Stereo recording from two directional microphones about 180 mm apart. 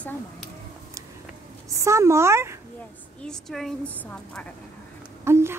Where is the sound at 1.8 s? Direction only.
15° right (ahead or behind).